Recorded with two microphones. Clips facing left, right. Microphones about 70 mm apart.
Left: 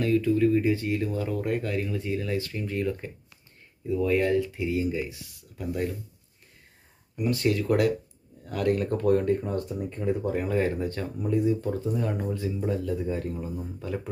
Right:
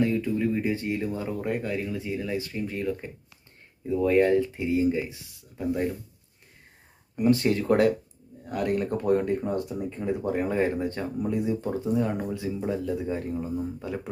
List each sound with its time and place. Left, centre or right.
0.0 s speech: right
3.8 s speech: right
7.2 s speech: right
8.4 s speech: centre
12.5 s speech: right